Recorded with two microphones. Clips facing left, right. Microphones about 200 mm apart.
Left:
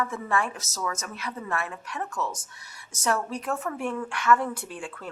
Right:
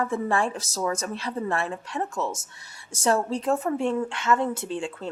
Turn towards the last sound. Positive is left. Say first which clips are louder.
# right 7 dB
turn(degrees=-25)  # may be behind; listen again after turning